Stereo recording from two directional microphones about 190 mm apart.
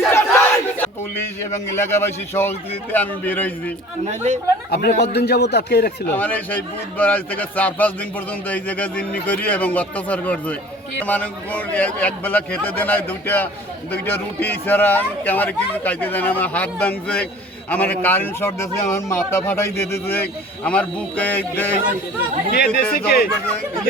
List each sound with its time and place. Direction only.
0.1 s battle cry: 15° left (ahead or behind)
1.7 s speech: 15° left (ahead or behind)
4.0 s speech: 35° right (ahead or behind)
4.7 s speech: 55° left (ahead or behind)
6.1 s speech: 10° left (ahead or behind)
22.5 s speech: 55° left (ahead or behind)